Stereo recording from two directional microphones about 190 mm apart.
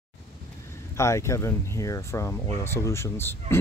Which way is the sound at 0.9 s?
15° left (ahead or behind).